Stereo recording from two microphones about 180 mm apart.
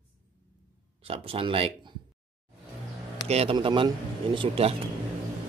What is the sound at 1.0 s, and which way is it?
Speech, 30° right (ahead or behind).